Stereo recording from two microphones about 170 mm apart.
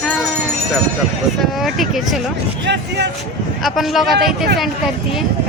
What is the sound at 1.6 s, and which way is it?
Speech, centre (ahead or behind).